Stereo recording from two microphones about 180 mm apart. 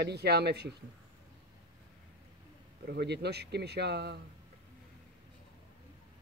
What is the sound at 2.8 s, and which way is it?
Speech, 65° right (ahead or behind).